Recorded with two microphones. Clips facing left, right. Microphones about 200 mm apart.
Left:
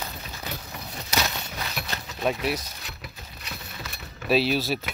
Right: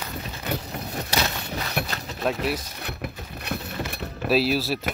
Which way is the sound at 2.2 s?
Centre (ahead or behind).